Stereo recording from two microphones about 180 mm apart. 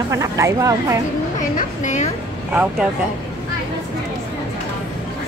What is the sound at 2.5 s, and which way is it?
Speech, 10° right (ahead or behind).